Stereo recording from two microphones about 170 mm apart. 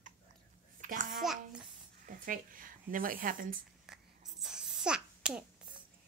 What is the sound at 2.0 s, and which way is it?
A woman's voice, 55° right (ahead or behind).